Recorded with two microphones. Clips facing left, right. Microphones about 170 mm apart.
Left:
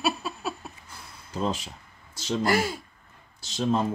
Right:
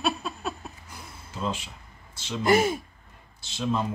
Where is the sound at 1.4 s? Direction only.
40° left (ahead or behind).